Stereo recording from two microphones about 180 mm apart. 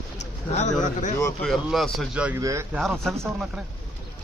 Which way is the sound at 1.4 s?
Centre (ahead or behind).